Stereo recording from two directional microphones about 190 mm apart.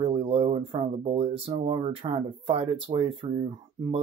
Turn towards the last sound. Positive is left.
turn(degrees=-30)  # may be behind; listen again after turning